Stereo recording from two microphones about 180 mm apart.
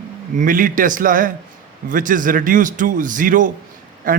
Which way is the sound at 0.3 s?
50° right (ahead or behind).